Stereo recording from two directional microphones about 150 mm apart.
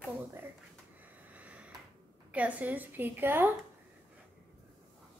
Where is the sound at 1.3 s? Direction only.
10° right (ahead or behind).